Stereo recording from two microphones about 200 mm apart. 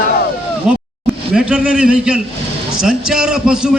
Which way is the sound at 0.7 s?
5° right (ahead or behind).